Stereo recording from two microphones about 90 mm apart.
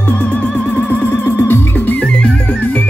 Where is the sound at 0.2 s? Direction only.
15° left (ahead or behind).